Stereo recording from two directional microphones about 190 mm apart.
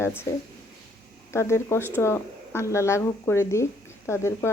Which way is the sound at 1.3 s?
15° left (ahead or behind).